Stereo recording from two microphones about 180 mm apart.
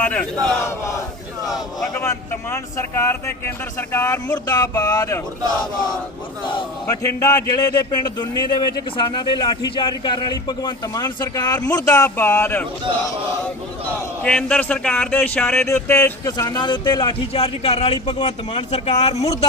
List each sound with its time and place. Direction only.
0.0 s speech: 5° left (ahead or behind)
2.0 s speech: 15° left (ahead or behind)
6.5 s speech: 20° left (ahead or behind)
13.8 s speech: 5° left (ahead or behind); by 19.1 s 35° left (ahead or behind)